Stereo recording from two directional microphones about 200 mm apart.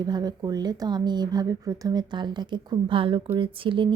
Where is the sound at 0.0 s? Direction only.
20° right (ahead or behind).